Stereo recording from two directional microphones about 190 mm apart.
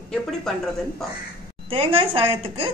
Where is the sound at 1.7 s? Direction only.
30° right (ahead or behind).